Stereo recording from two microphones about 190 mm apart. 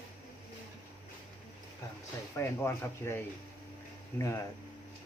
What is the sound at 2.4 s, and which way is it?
Speech, 15° left (ahead or behind).